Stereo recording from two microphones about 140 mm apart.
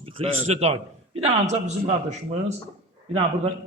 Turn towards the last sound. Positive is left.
turn(degrees=-45)  # may be behind; listen again after turning